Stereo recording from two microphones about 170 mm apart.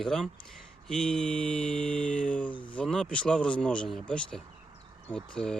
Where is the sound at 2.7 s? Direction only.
5° left (ahead or behind).